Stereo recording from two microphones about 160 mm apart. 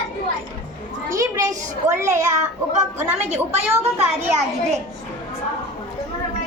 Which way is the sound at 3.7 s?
40° right (ahead or behind).